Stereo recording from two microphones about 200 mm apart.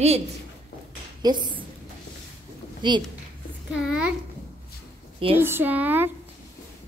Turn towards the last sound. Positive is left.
turn(degrees=-10)  # may be behind; listen again after turning